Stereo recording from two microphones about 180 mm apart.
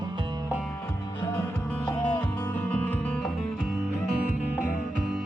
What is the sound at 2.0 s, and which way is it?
Music, 10° left (ahead or behind).